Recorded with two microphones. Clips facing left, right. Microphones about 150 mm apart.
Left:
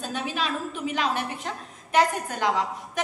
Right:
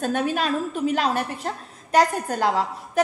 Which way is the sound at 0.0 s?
50° right (ahead or behind).